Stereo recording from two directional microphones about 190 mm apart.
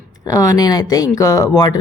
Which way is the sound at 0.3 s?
20° left (ahead or behind).